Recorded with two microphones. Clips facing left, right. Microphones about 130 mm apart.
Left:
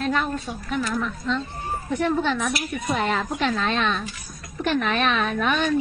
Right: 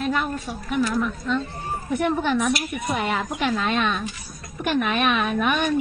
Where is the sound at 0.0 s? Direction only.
10° right (ahead or behind).